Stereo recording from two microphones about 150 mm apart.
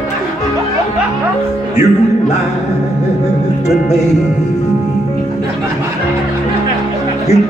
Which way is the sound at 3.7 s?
50° left (ahead or behind).